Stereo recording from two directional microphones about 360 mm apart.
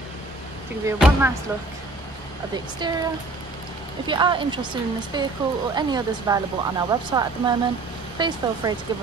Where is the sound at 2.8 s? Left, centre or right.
Centre.